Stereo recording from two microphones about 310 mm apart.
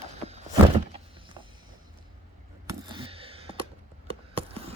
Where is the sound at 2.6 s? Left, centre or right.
Centre.